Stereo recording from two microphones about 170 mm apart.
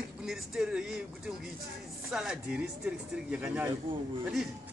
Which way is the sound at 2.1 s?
5° right (ahead or behind).